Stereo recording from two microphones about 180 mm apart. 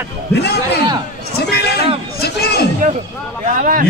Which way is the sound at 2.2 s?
60° left (ahead or behind).